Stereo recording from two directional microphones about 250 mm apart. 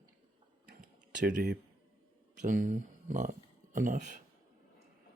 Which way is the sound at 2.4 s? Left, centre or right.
Right.